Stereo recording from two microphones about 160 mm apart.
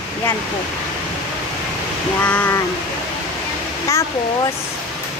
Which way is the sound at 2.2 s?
10° left (ahead or behind).